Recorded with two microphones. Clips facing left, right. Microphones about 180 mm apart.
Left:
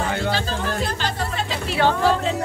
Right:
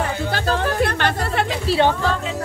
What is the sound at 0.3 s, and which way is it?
Music, 55° right (ahead or behind).